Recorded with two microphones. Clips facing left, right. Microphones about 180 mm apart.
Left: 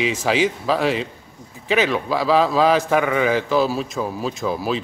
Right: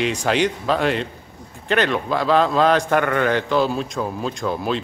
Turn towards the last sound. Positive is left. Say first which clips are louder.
# even
turn(degrees=5)  # may be behind; listen again after turning